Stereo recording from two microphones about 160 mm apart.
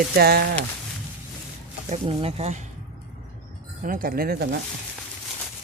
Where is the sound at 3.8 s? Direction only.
60° right (ahead or behind).